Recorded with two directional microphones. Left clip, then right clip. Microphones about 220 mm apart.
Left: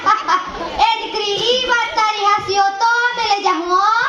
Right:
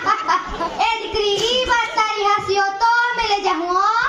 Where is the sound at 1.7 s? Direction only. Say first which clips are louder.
Left 2 dB; 30° left (ahead or behind).